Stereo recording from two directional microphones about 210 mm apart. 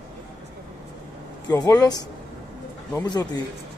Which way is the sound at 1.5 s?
15° left (ahead or behind).